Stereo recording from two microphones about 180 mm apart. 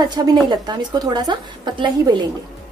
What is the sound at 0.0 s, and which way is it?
A woman's voice, 25° right (ahead or behind).